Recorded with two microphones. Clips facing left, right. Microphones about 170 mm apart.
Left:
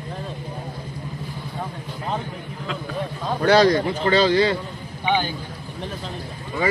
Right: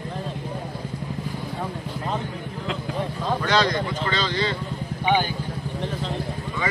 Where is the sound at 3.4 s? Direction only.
45° left (ahead or behind).